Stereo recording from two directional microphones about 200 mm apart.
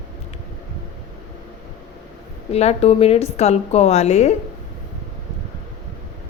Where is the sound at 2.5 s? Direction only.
30° left (ahead or behind).